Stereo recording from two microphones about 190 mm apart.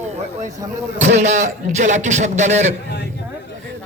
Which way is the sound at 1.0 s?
35° right (ahead or behind).